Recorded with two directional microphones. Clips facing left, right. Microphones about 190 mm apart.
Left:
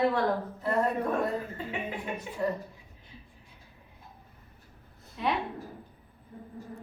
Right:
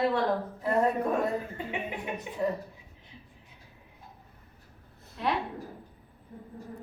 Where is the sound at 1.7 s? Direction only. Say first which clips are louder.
Right 1 dB; 20° right (ahead or behind).